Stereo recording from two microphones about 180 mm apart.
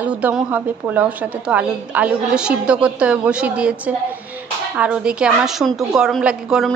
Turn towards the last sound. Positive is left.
turn(degrees=0)  # may be behind; listen again after turning